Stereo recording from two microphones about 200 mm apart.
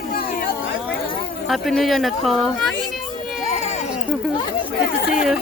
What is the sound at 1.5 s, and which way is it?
Speech, centre (ahead or behind).